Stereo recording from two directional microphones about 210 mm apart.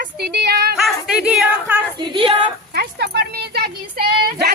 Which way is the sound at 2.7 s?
50° right (ahead or behind).